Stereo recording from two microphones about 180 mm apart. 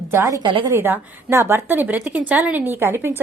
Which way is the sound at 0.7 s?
15° right (ahead or behind).